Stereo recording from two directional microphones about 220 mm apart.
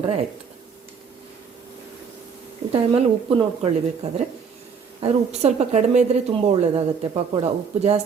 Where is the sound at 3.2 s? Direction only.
25° right (ahead or behind).